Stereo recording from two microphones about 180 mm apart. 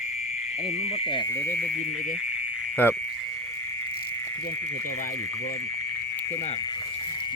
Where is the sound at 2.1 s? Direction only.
5° right (ahead or behind).